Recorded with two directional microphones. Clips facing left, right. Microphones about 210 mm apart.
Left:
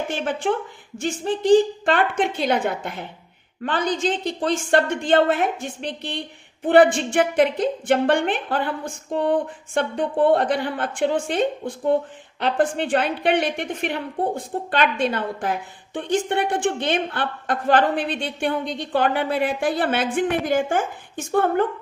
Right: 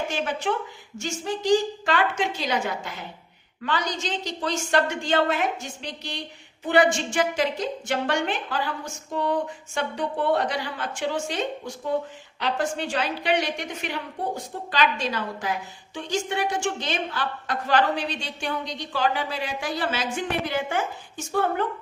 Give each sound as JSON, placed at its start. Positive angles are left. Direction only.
{"t": 0.1, "sound": "a woman's voice", "side_deg": 50}